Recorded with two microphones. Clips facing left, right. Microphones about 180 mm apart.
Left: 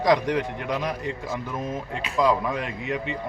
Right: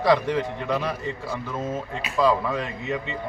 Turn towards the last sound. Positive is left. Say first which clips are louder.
# even
turn(degrees=15)  # may be behind; listen again after turning